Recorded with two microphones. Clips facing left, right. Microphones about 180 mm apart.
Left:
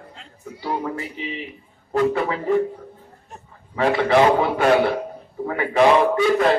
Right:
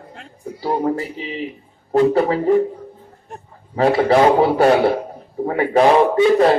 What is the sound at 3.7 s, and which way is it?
A man's voice, 40° right (ahead or behind).